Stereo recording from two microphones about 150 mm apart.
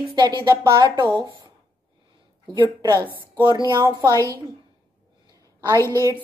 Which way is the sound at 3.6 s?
25° right (ahead or behind).